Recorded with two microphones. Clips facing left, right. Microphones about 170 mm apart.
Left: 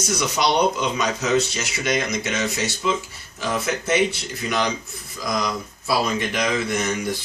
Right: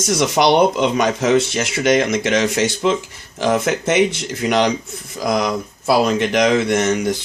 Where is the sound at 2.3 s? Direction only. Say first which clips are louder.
Right 8 dB; 90° right.